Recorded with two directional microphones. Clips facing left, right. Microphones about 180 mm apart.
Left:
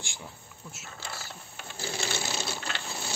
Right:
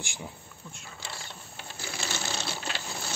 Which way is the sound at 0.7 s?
5° left (ahead or behind).